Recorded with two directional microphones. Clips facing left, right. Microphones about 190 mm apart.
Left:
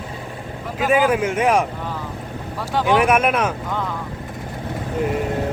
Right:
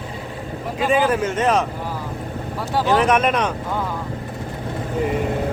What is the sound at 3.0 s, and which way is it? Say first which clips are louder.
Speech: left 1 dB; 10° left (ahead or behind).